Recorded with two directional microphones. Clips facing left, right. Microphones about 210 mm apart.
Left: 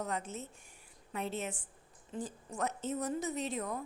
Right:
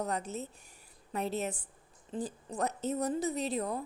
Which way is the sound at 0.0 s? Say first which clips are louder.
Right 3 dB; 40° right (ahead or behind).